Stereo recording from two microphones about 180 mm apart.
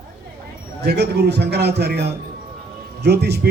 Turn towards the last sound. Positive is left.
turn(degrees=-65)  # may be behind; listen again after turning